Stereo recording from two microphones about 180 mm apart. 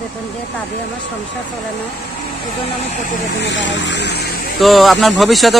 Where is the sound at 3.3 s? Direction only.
80° left; by 4.3 s 65° left (ahead or behind).